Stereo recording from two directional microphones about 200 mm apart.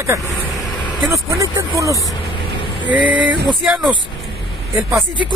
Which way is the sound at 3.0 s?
5° right (ahead or behind).